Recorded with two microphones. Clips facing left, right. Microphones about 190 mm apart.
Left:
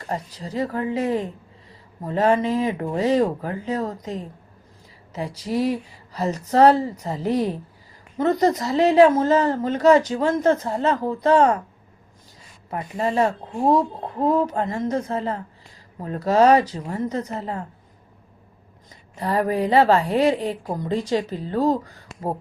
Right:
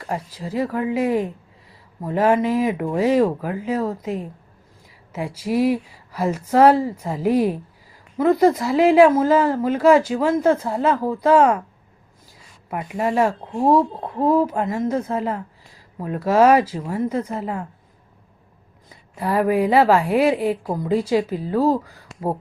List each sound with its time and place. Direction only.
0.1 s a woman's voice: 10° right (ahead or behind)
2.4 s speech: 25° left (ahead or behind)
2.7 s a woman's voice: 10° right (ahead or behind)
12.7 s a woman's voice: 10° right (ahead or behind)
19.1 s a woman's voice: 10° right (ahead or behind)